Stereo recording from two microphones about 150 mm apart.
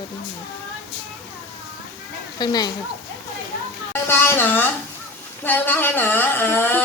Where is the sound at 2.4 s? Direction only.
30° left (ahead or behind).